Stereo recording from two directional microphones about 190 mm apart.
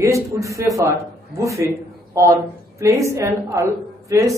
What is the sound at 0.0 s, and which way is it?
A woman's voice, 15° right (ahead or behind).